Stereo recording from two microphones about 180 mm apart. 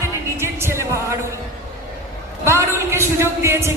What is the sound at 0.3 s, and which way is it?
Music, 15° right (ahead or behind).